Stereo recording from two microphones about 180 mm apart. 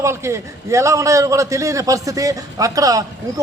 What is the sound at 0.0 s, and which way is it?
A man's voice, 15° right (ahead or behind).